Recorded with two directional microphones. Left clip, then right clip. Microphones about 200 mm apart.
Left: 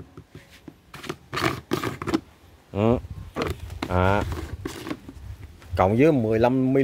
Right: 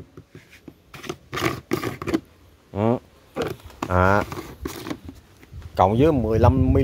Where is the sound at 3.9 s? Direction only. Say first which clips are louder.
Right 4 dB; 15° right (ahead or behind).